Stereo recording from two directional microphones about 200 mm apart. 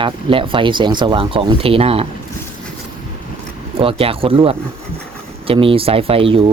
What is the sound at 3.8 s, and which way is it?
Speech, 30° right (ahead or behind).